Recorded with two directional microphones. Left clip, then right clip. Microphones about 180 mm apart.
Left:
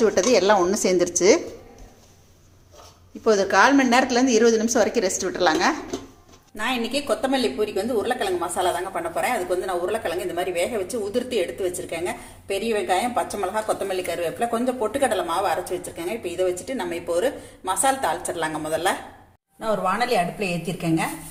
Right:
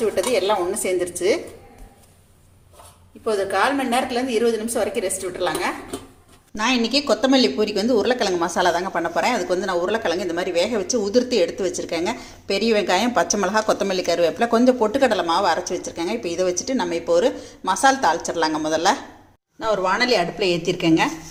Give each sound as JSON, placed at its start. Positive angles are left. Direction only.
{"t": 0.0, "sound": "speech", "side_deg": 25}
{"t": 3.2, "sound": "a woman's voice", "side_deg": 35}
{"t": 6.6, "sound": "a woman's voice", "side_deg": -35}